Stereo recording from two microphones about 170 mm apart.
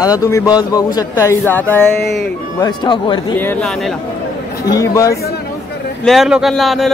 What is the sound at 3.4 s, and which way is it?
Speech, 10° left (ahead or behind).